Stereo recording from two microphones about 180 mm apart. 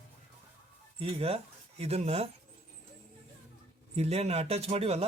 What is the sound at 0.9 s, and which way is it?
Speech, 35° right (ahead or behind).